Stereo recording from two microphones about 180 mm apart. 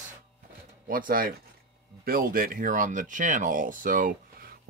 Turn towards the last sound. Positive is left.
turn(degrees=-50)  # may be behind; listen again after turning